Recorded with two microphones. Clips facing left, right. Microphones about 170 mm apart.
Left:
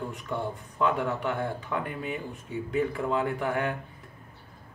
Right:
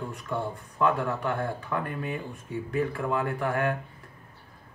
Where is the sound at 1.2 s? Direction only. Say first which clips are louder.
Even; 15° left (ahead or behind).